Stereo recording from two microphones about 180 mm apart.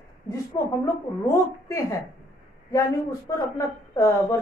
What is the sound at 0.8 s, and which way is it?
A woman's voice, 15° left (ahead or behind).